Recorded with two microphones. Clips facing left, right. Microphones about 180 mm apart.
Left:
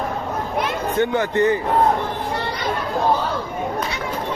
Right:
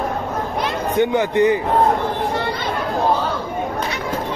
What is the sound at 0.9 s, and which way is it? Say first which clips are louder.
Speech: right 3 dB; 15° right (ahead or behind).